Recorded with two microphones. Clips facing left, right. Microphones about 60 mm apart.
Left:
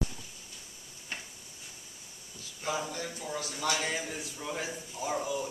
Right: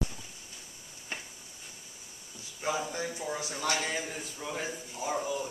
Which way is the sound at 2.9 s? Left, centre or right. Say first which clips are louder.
Right 2 dB; right.